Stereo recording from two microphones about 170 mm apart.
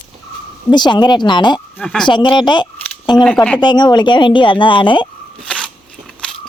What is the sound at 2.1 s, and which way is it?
A woman's voice, 25° left (ahead or behind).